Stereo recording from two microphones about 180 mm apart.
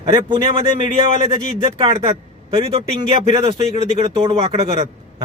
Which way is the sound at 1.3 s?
30° right (ahead or behind).